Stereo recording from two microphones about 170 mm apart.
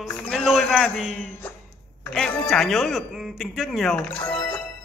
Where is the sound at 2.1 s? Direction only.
Centre (ahead or behind).